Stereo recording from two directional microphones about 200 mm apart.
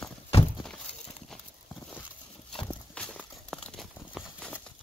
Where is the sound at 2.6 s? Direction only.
5° left (ahead or behind).